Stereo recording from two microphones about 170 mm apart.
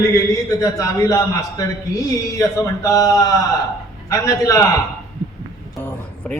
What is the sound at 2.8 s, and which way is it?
A man's voice, 20° left (ahead or behind).